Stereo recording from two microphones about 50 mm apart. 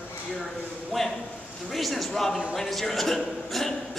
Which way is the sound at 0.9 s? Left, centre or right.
Centre.